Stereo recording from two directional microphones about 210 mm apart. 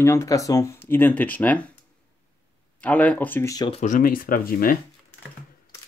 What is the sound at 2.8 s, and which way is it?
Speech, 5° left (ahead or behind).